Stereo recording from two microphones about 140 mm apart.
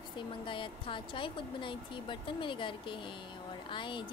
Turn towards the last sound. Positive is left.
turn(degrees=35)  # may be behind; listen again after turning